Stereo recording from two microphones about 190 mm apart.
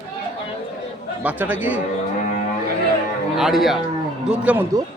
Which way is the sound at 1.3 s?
10° right (ahead or behind).